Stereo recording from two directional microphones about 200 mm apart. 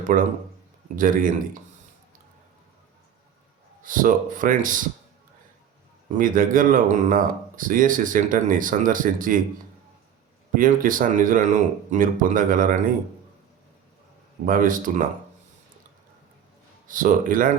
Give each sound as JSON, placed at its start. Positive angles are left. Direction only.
{"t": 0.1, "sound": "speech", "side_deg": -40}
{"t": 3.8, "sound": "speech", "side_deg": -40}
{"t": 6.1, "sound": "speech", "side_deg": -45}
{"t": 10.5, "sound": "speech", "side_deg": -45}
{"t": 14.4, "sound": "speech", "side_deg": -45}
{"t": 16.8, "sound": "speech", "side_deg": -40}